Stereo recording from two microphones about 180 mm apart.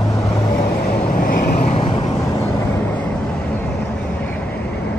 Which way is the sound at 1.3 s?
55° left (ahead or behind).